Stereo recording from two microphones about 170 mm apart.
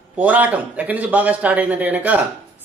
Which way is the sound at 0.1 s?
10° right (ahead or behind).